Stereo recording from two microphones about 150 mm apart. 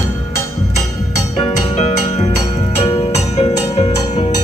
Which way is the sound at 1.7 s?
45° left (ahead or behind).